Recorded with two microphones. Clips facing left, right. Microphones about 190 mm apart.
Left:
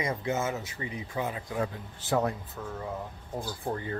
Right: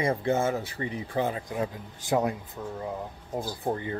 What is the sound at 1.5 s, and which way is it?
Speech, 15° right (ahead or behind).